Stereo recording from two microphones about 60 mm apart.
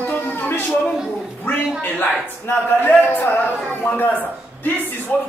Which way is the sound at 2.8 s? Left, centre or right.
Left.